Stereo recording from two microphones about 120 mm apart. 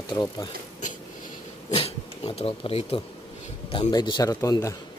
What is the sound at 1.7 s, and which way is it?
Speech, 55° left (ahead or behind).